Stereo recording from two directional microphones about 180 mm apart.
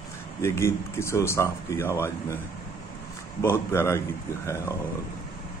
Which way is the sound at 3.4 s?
15° left (ahead or behind).